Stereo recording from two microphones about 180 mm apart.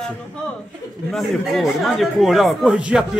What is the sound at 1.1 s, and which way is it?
Speech, centre (ahead or behind).